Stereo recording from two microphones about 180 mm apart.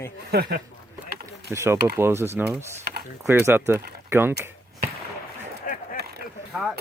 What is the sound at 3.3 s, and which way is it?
Speech, 10° right (ahead or behind).